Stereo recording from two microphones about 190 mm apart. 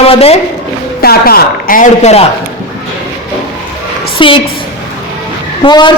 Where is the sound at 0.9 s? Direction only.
55° left (ahead or behind); by 2.2 s 35° left (ahead or behind).